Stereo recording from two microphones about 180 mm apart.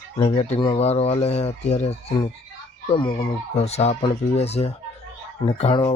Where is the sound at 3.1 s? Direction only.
30° left (ahead or behind).